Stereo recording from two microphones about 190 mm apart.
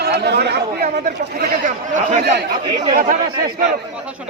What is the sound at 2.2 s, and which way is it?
Speech, 60° right (ahead or behind).